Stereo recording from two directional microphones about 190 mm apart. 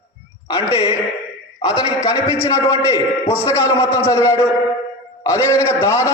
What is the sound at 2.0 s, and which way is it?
A man's voice, 20° left (ahead or behind).